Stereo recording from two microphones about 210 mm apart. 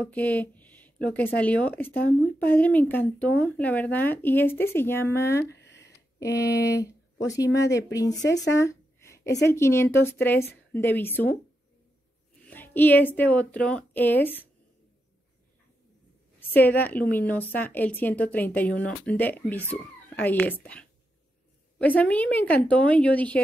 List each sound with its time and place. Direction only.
0.0 s speech: 5° left (ahead or behind)
5.5 s a sound: 55° left (ahead or behind)
6.1 s speech: 15° left (ahead or behind)
8.5 s a sound: 15° left (ahead or behind)
9.5 s speech: 10° left (ahead or behind)
12.4 s speech: 10° left (ahead or behind)
16.3 s speech: 10° left (ahead or behind)